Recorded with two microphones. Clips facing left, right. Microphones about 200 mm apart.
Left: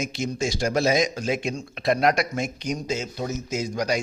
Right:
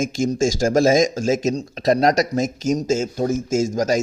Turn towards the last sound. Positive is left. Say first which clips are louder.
# right 7 dB
turn(degrees=-45)  # may be behind; listen again after turning